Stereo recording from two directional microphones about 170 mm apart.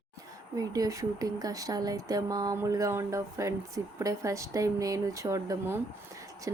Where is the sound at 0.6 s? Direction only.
20° right (ahead or behind).